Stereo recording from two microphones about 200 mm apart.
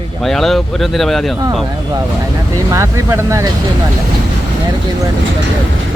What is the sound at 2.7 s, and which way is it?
Speech, 15° right (ahead or behind).